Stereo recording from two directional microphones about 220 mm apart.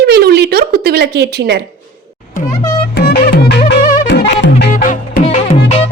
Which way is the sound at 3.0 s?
45° left (ahead or behind).